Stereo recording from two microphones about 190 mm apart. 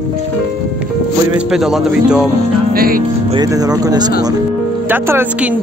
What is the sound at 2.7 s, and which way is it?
Speech, 50° right (ahead or behind).